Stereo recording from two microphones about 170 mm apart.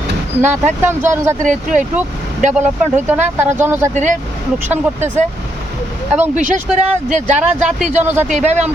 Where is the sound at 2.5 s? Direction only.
10° right (ahead or behind).